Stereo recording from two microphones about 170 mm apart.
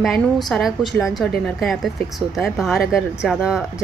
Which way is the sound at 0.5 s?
Centre (ahead or behind).